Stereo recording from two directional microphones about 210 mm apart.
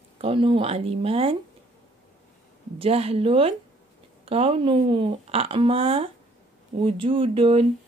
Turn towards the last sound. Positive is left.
turn(degrees=-25)  # may be behind; listen again after turning